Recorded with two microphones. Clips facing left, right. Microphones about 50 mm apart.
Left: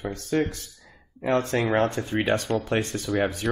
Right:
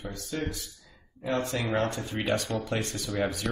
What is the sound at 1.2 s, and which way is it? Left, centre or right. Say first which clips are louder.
Speech: left 6 dB; left.